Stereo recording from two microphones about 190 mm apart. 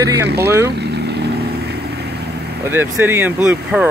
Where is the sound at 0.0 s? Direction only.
15° right (ahead or behind).